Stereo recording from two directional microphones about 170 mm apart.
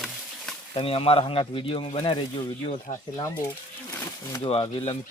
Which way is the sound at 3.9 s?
15° left (ahead or behind).